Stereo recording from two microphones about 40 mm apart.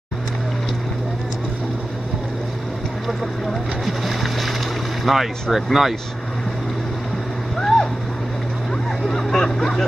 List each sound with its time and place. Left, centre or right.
3.8 s boat: centre
5.0 s speech: centre
7.5 s vehicle: centre
9.0 s a sound: centre